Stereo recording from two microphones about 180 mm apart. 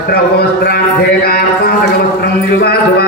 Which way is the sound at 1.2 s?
60° left (ahead or behind).